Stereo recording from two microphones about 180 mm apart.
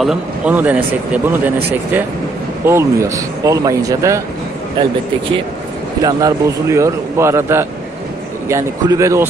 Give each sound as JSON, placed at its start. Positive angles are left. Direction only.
{"t": 0.0, "sound": "speech", "side_deg": -5}
{"t": 2.6, "sound": "speech", "side_deg": -15}
{"t": 6.0, "sound": "speech", "side_deg": -20}